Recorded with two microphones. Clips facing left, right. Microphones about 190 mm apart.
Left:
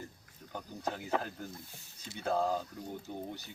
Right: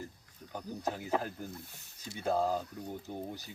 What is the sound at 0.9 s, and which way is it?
Speech, 5° right (ahead or behind).